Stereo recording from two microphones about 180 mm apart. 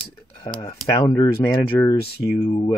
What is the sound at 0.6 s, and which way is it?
Speech, 20° left (ahead or behind).